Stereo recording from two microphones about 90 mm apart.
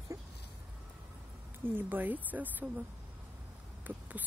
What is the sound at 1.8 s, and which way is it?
Speech, 20° right (ahead or behind).